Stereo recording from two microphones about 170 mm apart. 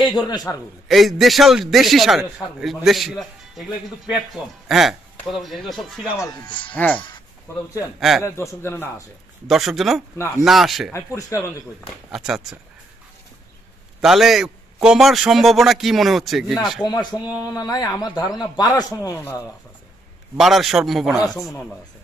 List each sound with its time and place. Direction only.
0.3 s speech: 25° left (ahead or behind)
0.8 s a man's voice: centre (ahead or behind)
6.1 s speech: 25° left (ahead or behind)
6.7 s a man's voice: 10° left (ahead or behind)
8.2 s a man's voice: 15° left (ahead or behind)
9.5 s a man's voice: centre (ahead or behind)
10.1 s a man's voice: 15° left (ahead or behind)
10.4 s a man's voice: centre (ahead or behind)
10.9 s speech: 20° left (ahead or behind)
12.1 s a man's voice: centre (ahead or behind)
14.0 s a man's voice: centre (ahead or behind)
16.8 s speech: 25° left (ahead or behind)
20.3 s a man's voice: centre (ahead or behind)